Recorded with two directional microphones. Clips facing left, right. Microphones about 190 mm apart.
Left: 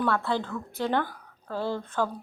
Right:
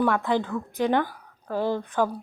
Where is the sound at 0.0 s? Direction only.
15° right (ahead or behind).